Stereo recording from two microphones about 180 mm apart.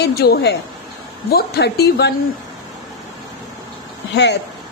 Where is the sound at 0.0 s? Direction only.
60° left (ahead or behind).